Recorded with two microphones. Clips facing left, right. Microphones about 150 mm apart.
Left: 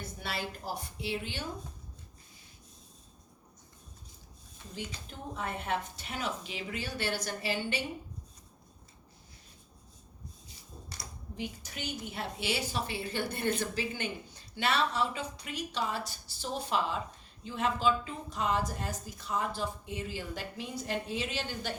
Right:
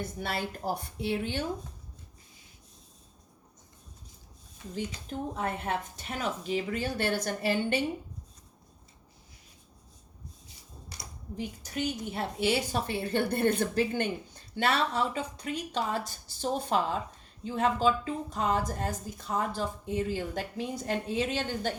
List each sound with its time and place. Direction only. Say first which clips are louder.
0.2 s a woman's voice: right 2 dB; 50° right (ahead or behind)
4.7 s a woman's voice: right 7 dB; 45° right (ahead or behind)
11.3 s a woman's voice: right 6 dB; 40° right (ahead or behind)